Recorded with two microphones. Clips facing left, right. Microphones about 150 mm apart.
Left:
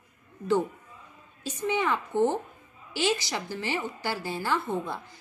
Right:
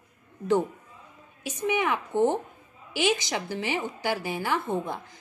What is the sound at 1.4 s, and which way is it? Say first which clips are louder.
Speech: right 1 dB; 15° right (ahead or behind).